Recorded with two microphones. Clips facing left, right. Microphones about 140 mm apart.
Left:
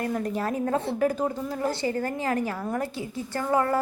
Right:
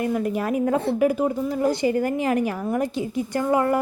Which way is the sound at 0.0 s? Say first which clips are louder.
Right 4 dB; 10° right (ahead or behind).